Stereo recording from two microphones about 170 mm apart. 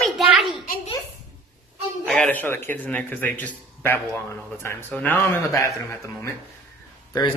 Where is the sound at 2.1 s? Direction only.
10° left (ahead or behind).